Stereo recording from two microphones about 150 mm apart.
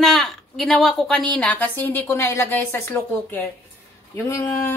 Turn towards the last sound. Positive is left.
turn(degrees=15)  # may be behind; listen again after turning